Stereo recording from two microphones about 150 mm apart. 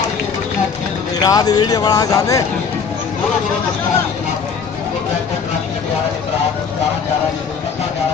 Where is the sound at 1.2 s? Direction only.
25° left (ahead or behind).